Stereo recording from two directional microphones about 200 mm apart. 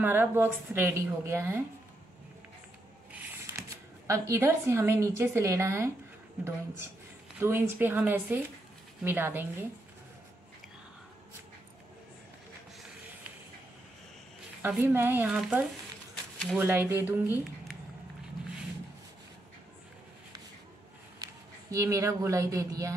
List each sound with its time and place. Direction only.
0.0 s a woman's voice: 10° right (ahead or behind)
3.1 s a sound: 15° right (ahead or behind)
4.1 s a woman's voice: 15° right (ahead or behind)
7.3 s a woman's voice: 10° right (ahead or behind)
14.6 s a woman's voice: 10° right (ahead or behind)
21.2 s speech: 15° right (ahead or behind)